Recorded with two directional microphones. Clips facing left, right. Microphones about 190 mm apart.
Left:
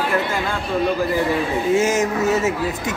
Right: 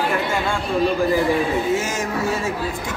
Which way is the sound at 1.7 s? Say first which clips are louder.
Left 5 dB; 25° left (ahead or behind).